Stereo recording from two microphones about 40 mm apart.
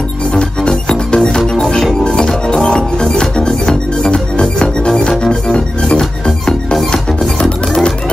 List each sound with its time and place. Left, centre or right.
0.3 s music: left